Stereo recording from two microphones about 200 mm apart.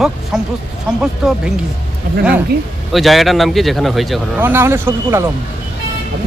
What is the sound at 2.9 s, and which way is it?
A man's voice, centre (ahead or behind).